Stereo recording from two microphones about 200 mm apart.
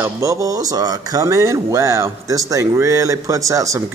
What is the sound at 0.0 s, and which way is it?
A child's voice, 15° right (ahead or behind).